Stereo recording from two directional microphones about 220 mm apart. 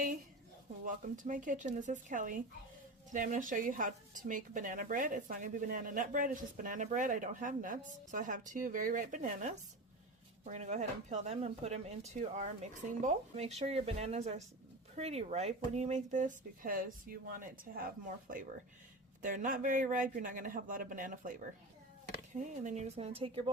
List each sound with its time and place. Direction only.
0.9 s a woman's voice: 35° right (ahead or behind)